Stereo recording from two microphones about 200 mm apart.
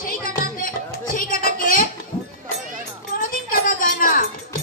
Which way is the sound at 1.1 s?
45° left (ahead or behind).